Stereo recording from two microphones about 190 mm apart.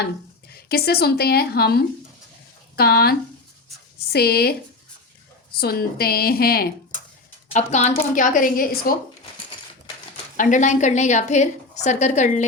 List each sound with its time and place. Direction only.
0.5 s a woman's voice: 55° left (ahead or behind)
5.5 s a woman's voice: 55° left (ahead or behind)
7.5 s a woman's voice: 35° left (ahead or behind)
10.3 s a woman's voice: 40° left (ahead or behind)